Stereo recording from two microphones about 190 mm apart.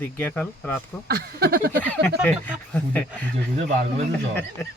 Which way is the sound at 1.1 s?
55° right (ahead or behind).